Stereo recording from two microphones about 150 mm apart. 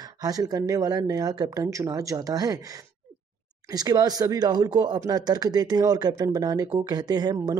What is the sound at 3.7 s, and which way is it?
Speech, 25° right (ahead or behind).